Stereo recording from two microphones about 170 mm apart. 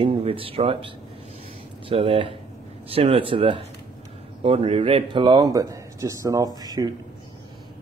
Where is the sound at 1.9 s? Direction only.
35° right (ahead or behind).